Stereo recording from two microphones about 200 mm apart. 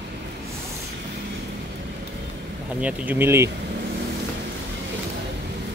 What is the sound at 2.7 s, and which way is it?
Speech, 5° right (ahead or behind).